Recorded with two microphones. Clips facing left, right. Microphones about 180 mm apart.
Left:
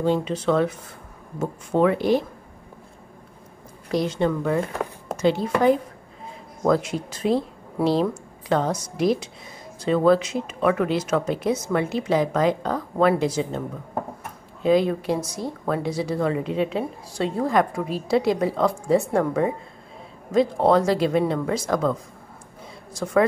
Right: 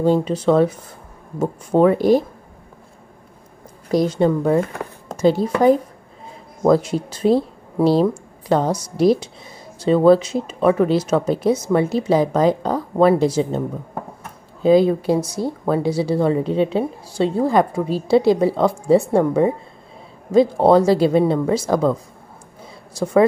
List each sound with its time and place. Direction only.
0.0 s a woman's voice: 40° right (ahead or behind)
3.9 s a woman's voice: 40° right (ahead or behind)
14.6 s a woman's voice: 35° right (ahead or behind)